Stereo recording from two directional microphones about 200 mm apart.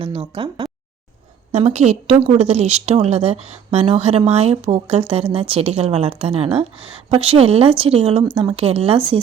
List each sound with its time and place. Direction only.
0.0 s a woman's voice: 25° right (ahead or behind)